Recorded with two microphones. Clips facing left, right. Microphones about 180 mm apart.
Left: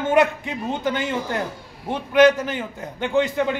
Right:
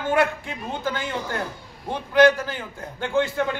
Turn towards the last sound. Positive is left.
turn(degrees=20)  # may be behind; listen again after turning